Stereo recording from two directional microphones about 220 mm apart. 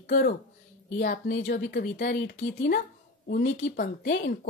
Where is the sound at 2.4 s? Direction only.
45° left (ahead or behind).